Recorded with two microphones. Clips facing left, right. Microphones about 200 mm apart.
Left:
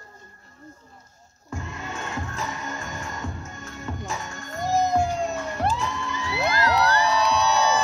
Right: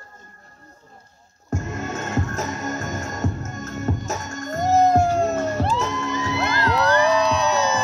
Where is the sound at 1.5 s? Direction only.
45° right (ahead or behind).